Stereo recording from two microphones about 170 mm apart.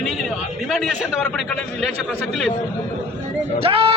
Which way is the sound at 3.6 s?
35° right (ahead or behind).